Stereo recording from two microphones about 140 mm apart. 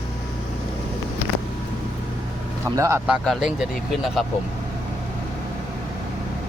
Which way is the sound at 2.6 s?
20° right (ahead or behind).